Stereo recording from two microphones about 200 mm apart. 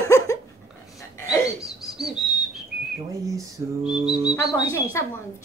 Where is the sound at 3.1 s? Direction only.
15° right (ahead or behind).